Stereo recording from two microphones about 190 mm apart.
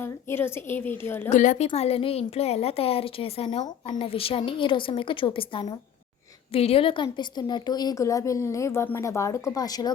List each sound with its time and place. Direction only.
0.0 s a woman's voice: 10° left (ahead or behind)
1.3 s a woman's voice: 40° left (ahead or behind); by 9.9 s 20° left (ahead or behind)